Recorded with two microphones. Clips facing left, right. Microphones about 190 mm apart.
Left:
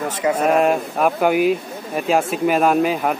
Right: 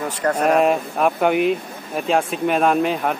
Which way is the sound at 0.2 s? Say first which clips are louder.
Even; 5° left (ahead or behind).